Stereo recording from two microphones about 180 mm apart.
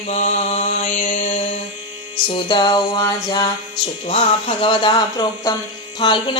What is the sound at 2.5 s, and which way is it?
Speech, 25° left (ahead or behind).